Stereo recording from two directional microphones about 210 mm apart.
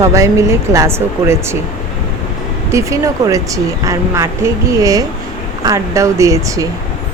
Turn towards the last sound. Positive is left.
turn(degrees=-15)  # may be behind; listen again after turning